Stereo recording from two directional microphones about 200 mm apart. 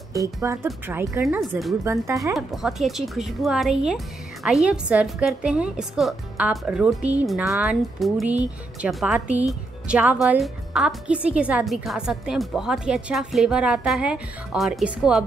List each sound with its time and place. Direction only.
0.1 s speech: 15° right (ahead or behind)
2.3 s speech: centre (ahead or behind)